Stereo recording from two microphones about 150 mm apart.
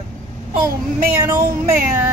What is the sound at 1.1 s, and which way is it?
Speech, 20° right (ahead or behind).